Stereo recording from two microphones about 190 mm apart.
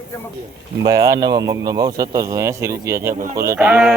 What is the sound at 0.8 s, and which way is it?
Speech, 20° right (ahead or behind).